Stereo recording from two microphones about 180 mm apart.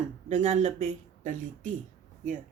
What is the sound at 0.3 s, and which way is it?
Speech, 40° right (ahead or behind).